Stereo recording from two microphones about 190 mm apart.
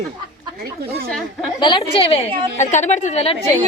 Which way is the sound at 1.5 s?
25° left (ahead or behind).